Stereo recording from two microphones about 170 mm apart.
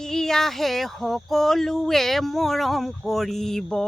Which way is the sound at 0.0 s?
5° left (ahead or behind).